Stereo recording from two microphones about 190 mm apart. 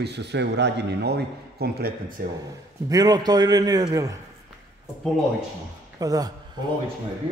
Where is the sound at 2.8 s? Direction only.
20° right (ahead or behind).